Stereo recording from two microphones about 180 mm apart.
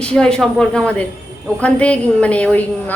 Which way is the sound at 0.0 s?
5° left (ahead or behind).